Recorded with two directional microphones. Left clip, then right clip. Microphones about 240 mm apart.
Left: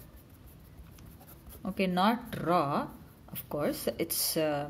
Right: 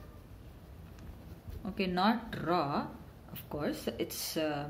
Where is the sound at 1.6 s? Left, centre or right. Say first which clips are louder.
Left 3 dB; left.